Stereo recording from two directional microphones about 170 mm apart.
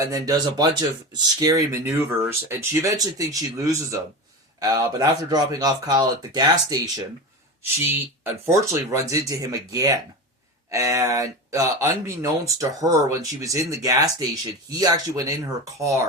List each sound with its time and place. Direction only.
0.0 s speech: 20° right (ahead or behind)
7.9 s speech: 15° right (ahead or behind)